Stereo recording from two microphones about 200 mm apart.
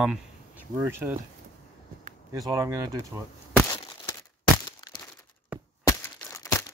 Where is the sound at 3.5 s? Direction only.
15° left (ahead or behind).